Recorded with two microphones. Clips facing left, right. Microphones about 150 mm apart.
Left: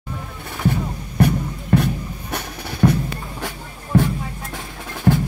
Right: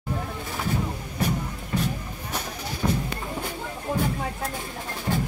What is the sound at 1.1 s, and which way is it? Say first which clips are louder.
Music: left 10 dB; 65° left (ahead or behind).